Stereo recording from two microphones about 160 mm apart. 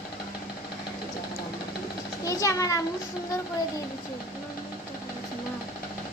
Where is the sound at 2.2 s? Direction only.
20° left (ahead or behind).